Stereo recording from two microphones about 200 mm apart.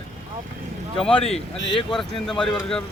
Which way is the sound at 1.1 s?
30° left (ahead or behind).